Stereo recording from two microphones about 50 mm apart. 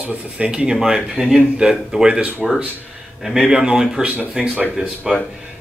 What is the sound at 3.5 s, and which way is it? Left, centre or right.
Speech, centre.